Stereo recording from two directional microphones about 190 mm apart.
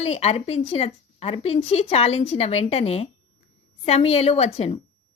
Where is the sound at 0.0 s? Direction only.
35° left (ahead or behind).